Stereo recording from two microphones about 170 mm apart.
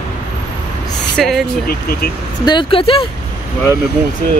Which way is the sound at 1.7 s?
65° left (ahead or behind).